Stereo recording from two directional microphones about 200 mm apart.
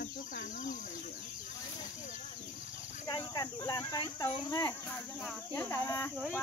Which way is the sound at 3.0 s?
20° left (ahead or behind).